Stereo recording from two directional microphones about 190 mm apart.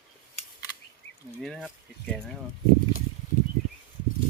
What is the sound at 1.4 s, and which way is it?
Speech, centre (ahead or behind).